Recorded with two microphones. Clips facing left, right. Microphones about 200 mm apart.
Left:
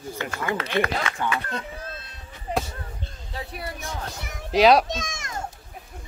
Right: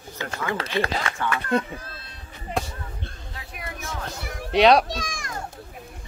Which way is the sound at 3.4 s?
35° left (ahead or behind).